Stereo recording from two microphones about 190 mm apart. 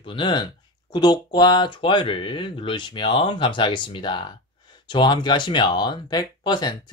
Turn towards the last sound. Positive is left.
turn(degrees=25)  # may be behind; listen again after turning